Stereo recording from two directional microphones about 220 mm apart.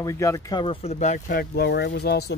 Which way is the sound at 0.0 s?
15° left (ahead or behind).